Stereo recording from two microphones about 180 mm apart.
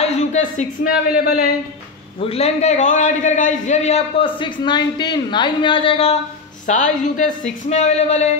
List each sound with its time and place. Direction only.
0.0 s a man's voice: 40° left (ahead or behind)
2.1 s a man's voice: 35° left (ahead or behind)
4.4 s speech: 25° left (ahead or behind)
6.7 s a man's voice: 45° left (ahead or behind)